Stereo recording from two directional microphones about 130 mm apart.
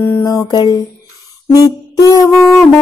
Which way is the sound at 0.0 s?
20° left (ahead or behind).